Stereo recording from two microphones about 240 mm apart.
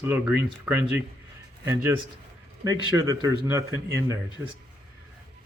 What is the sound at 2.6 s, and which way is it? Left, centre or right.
Speech, centre.